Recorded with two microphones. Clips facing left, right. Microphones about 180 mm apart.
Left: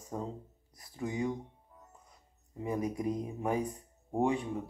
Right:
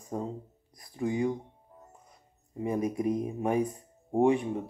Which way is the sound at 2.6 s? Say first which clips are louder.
Right 4 dB; 20° right (ahead or behind).